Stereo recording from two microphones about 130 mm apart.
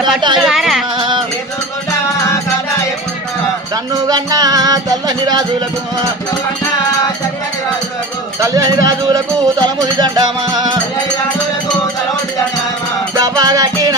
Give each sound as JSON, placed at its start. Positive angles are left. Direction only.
{"t": 0.3, "sound": "speech", "side_deg": 0}
{"t": 0.9, "sound": "music", "side_deg": -35}
{"t": 4.1, "sound": "music", "side_deg": -30}
{"t": 8.4, "sound": "speech", "side_deg": -25}
{"t": 9.8, "sound": "music", "side_deg": -30}
{"t": 13.1, "sound": "music", "side_deg": -30}